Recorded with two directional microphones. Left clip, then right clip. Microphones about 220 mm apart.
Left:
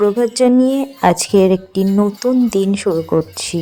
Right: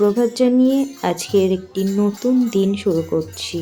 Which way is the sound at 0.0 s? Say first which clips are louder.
Left 3 dB; 35° left (ahead or behind).